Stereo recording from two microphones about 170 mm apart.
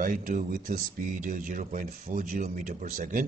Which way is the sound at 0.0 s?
50° right (ahead or behind).